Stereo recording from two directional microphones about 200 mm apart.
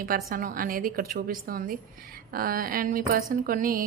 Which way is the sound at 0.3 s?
45° right (ahead or behind).